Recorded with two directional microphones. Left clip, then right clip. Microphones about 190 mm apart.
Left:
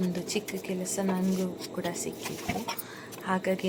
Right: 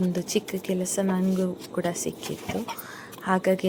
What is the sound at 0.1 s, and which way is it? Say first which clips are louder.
A woman's voice: right 5 dB; 25° right (ahead or behind).